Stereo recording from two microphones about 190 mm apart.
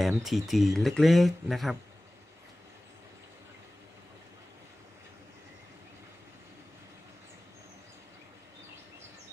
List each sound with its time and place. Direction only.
0.0 s speech: centre (ahead or behind)